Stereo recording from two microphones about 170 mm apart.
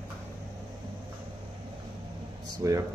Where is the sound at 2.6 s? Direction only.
15° right (ahead or behind).